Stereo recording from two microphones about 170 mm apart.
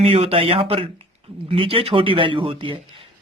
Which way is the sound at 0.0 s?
35° right (ahead or behind).